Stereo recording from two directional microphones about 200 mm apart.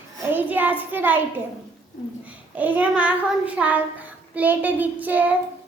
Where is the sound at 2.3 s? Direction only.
10° right (ahead or behind).